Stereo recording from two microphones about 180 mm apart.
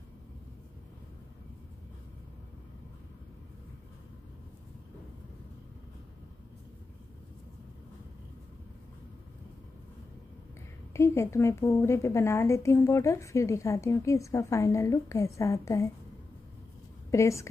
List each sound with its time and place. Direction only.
10.9 s a woman's voice: 15° left (ahead or behind)
17.1 s a woman's voice: 15° left (ahead or behind)